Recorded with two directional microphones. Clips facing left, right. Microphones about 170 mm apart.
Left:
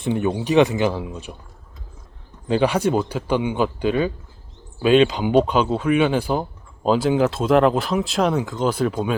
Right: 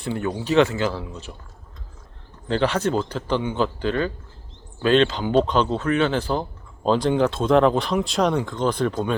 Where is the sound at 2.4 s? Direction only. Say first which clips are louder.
Left 3 dB; 10° left (ahead or behind).